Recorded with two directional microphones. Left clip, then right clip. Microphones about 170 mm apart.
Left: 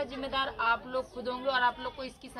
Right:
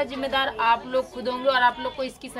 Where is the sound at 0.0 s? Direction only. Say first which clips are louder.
Right 8 dB; 15° right (ahead or behind).